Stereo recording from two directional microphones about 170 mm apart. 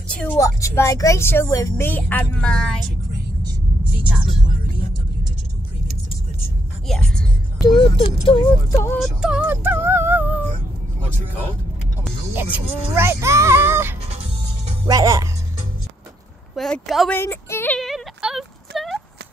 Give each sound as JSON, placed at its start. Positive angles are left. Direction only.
{"t": 0.1, "sound": "vehicle", "side_deg": 10}
{"t": 0.4, "sound": "speech", "side_deg": 20}
{"t": 7.6, "sound": "speech", "side_deg": 30}
{"t": 8.7, "sound": "speech", "side_deg": 15}
{"t": 9.0, "sound": "music", "side_deg": -5}
{"t": 12.4, "sound": "speech", "side_deg": -10}
{"t": 16.5, "sound": "speech", "side_deg": 5}
{"t": 17.1, "sound": "speech", "side_deg": 15}
{"t": 17.7, "sound": "a sound", "side_deg": 0}
{"t": 18.7, "sound": "clip-clop", "side_deg": 0}